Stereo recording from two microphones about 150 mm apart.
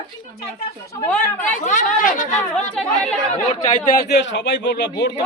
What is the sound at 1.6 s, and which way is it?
Speech, 60° left (ahead or behind).